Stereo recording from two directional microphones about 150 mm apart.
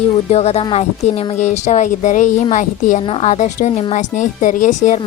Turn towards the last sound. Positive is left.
turn(degrees=55)  # may be behind; listen again after turning